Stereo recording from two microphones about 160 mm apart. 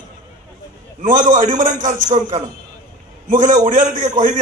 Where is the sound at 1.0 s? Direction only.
50° right (ahead or behind).